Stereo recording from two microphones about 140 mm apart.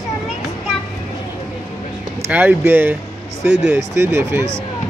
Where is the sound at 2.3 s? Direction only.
10° right (ahead or behind).